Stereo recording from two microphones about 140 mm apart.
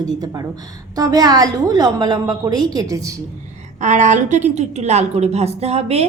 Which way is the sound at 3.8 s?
60° right (ahead or behind).